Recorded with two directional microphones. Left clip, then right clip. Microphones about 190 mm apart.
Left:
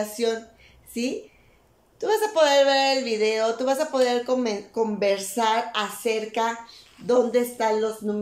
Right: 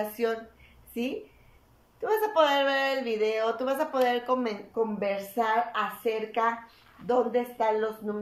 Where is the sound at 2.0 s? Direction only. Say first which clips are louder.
Left 3 dB; 20° left (ahead or behind).